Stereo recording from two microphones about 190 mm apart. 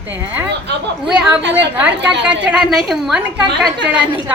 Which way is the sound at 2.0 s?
5° right (ahead or behind).